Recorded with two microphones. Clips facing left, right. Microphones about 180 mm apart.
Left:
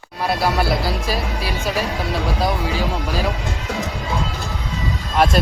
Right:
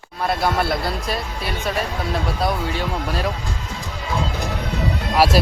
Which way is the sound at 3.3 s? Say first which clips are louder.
Left 3 dB; 75° left (ahead or behind).